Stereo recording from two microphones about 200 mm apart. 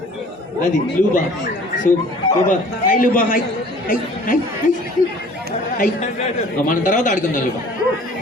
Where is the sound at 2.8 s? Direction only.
45° left (ahead or behind).